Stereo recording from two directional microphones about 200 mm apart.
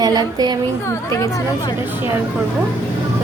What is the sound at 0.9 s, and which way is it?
Speech, 15° left (ahead or behind).